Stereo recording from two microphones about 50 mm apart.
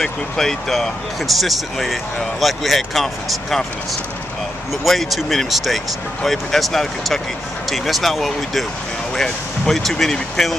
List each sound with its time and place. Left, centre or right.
0.0 s speech: centre
4.8 s speech: centre